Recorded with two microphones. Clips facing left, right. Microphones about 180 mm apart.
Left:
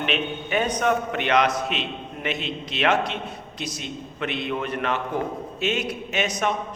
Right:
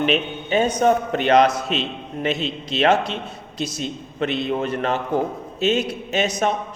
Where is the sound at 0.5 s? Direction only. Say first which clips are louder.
Right 5 dB; 25° right (ahead or behind).